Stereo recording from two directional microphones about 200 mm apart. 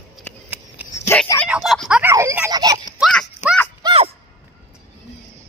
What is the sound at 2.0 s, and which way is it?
Speech, 15° right (ahead or behind).